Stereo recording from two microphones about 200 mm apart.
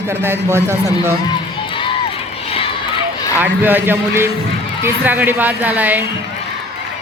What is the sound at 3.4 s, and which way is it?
A man's voice, 10° right (ahead or behind).